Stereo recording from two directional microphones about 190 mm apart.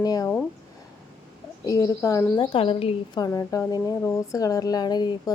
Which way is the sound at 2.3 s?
25° left (ahead or behind).